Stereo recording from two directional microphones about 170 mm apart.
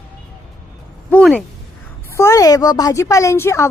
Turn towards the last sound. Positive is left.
turn(degrees=15)  # may be behind; listen again after turning